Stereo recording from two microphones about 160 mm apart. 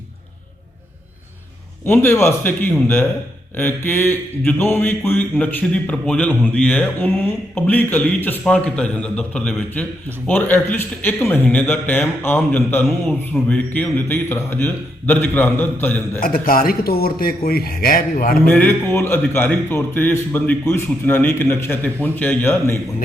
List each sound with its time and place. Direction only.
1.8 s speech: 15° left (ahead or behind)
16.2 s a man's voice: 65° left (ahead or behind)
18.4 s speech: 10° left (ahead or behind)